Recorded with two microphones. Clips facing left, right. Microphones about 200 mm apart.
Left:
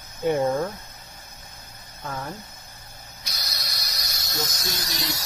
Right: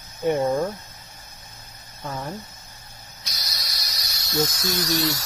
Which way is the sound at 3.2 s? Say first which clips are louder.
Left 1 dB; 50° left (ahead or behind).